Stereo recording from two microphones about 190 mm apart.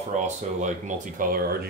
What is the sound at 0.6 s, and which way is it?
Speech, 40° right (ahead or behind).